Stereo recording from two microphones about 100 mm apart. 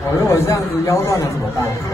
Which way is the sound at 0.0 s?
30° left (ahead or behind).